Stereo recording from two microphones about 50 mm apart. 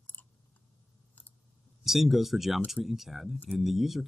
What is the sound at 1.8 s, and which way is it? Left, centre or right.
Speech, centre.